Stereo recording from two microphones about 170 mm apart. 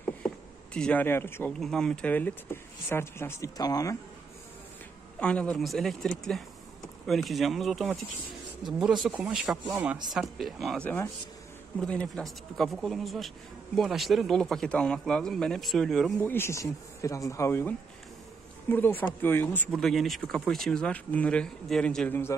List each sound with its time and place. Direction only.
0.7 s speech: 5° left (ahead or behind)
5.2 s speech: 5° left (ahead or behind)
16.2 s speech: 10° left (ahead or behind)